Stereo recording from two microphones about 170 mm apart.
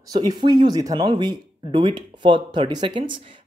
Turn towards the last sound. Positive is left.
turn(degrees=-30)  # may be behind; listen again after turning